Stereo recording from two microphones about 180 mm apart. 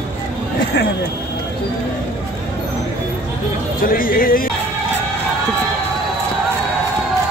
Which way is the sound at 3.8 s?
50° left (ahead or behind).